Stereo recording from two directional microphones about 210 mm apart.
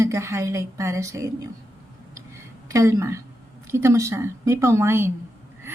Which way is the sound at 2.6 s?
15° right (ahead or behind).